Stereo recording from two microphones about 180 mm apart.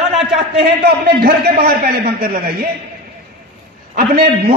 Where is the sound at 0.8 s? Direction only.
60° right (ahead or behind).